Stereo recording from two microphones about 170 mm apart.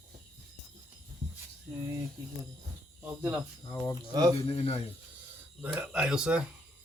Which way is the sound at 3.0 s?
10° right (ahead or behind).